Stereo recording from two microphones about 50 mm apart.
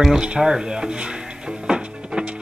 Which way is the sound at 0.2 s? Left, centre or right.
Centre.